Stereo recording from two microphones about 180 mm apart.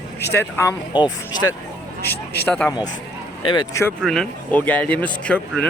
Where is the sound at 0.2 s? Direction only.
10° left (ahead or behind).